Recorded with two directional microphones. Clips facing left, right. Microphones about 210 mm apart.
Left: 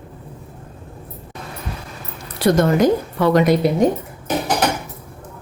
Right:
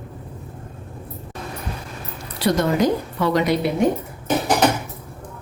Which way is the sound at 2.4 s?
50° left (ahead or behind).